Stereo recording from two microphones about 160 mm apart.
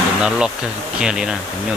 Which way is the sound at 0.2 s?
5° right (ahead or behind).